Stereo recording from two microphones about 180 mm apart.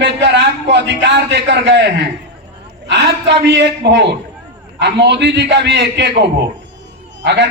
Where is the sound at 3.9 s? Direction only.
70° right (ahead or behind).